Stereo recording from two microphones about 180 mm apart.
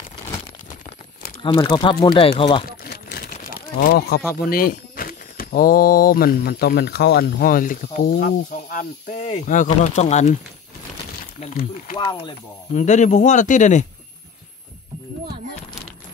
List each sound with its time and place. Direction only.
1.4 s speech: 30° left (ahead or behind)
2.8 s crumpling: 60° left (ahead or behind)
3.4 s a sound: 60° left (ahead or behind)
4.4 s speech: 55° left (ahead or behind)
9.3 s speech: 45° left (ahead or behind)
11.3 s a man's voice: 40° left (ahead or behind)